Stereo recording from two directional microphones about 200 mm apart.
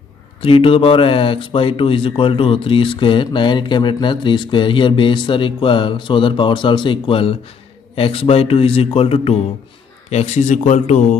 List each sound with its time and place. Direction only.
0.4 s a man's voice: 25° left (ahead or behind)